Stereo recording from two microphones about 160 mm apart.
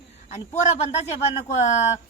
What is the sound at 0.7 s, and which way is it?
Speech, 40° left (ahead or behind).